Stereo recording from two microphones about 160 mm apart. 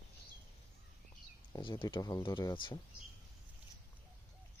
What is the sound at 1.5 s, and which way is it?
Speech, 30° left (ahead or behind).